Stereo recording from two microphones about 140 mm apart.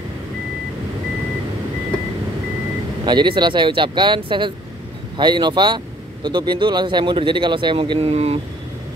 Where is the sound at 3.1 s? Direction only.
30° right (ahead or behind).